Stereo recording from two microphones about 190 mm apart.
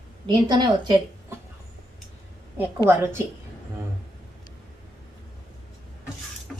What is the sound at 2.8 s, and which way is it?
Speech, 10° right (ahead or behind).